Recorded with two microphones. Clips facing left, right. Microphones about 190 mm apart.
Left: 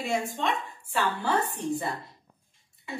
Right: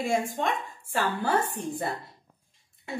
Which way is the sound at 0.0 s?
50° right (ahead or behind).